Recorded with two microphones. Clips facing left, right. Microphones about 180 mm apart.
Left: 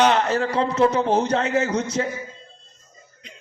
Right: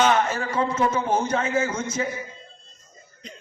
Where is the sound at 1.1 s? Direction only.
70° left (ahead or behind).